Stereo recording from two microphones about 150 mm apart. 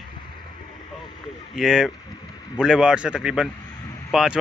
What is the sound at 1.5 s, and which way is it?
Speech, 5° right (ahead or behind).